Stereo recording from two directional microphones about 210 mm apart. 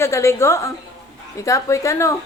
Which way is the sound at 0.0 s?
15° left (ahead or behind).